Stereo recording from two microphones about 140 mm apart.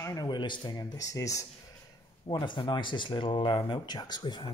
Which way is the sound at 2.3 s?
35° left (ahead or behind).